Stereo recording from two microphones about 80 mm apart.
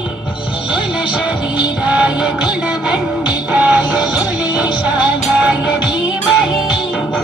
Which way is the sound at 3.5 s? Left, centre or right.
Centre.